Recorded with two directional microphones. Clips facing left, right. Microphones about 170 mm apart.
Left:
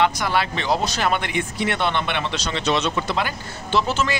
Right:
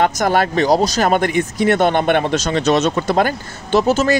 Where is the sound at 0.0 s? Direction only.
45° right (ahead or behind).